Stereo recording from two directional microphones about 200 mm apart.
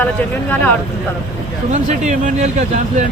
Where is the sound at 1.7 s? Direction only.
40° right (ahead or behind).